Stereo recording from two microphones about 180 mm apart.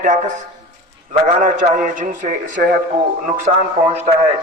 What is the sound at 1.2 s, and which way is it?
A man's voice, 45° right (ahead or behind).